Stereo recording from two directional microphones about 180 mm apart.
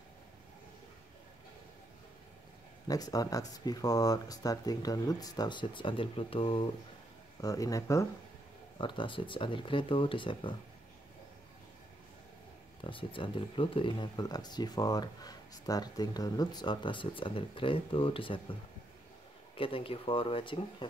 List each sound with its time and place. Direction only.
2.9 s speech: 20° left (ahead or behind)
7.4 s speech: 20° left (ahead or behind)
12.8 s speech: 30° left (ahead or behind)